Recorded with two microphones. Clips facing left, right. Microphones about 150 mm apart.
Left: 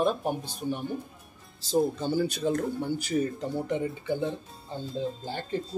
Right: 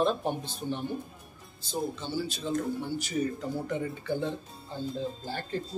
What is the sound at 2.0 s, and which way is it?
Speech, 50° left (ahead or behind).